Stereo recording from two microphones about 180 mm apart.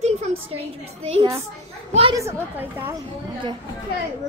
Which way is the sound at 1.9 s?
30° right (ahead or behind).